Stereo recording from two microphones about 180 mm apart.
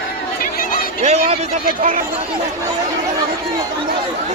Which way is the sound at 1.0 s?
35° right (ahead or behind).